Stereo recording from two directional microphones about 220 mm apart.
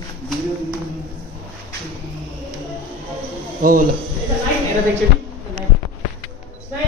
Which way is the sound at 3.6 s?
40° right (ahead or behind).